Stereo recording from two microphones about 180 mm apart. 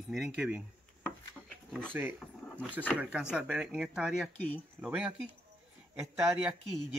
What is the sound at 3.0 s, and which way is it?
Speech, 5° right (ahead or behind).